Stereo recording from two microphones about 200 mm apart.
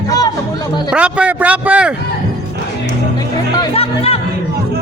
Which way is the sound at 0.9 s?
5° right (ahead or behind).